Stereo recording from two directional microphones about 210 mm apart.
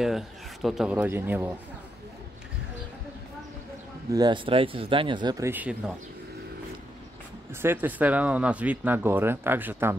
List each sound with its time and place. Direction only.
0.0 s a man's voice: centre (ahead or behind)
4.1 s speech: 20° right (ahead or behind)
7.6 s speech: 10° right (ahead or behind)